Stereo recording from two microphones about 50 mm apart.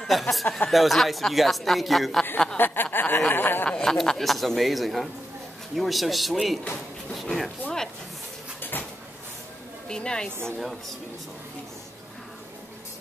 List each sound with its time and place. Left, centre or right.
0.0 s speech: centre
2.5 s speech: left
3.8 s a woman's voice: centre
8.5 s cupboard open or close: left
9.8 s a woman's voice: centre
10.6 s speech: centre